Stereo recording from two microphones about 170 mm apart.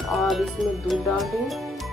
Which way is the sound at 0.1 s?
Centre (ahead or behind).